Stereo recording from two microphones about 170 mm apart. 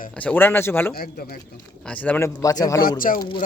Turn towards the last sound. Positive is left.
turn(degrees=30)  # may be behind; listen again after turning